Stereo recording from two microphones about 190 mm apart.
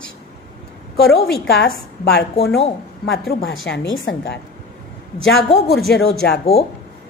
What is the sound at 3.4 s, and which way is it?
Speech, 80° left.